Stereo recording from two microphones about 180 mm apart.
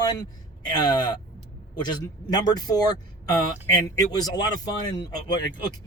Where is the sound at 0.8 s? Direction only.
25° left (ahead or behind).